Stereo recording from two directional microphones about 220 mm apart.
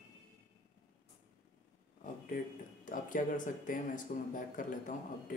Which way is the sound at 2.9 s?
35° left (ahead or behind).